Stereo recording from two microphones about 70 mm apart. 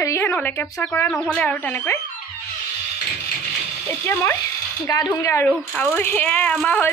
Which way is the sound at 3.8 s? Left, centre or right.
Left.